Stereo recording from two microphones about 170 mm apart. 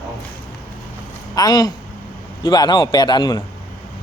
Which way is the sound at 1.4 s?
25° left (ahead or behind).